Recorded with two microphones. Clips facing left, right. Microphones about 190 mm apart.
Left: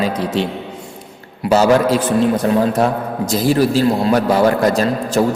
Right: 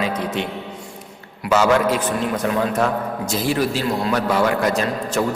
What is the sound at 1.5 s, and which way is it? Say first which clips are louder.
A man's voice: left 4 dB; 35° left (ahead or behind).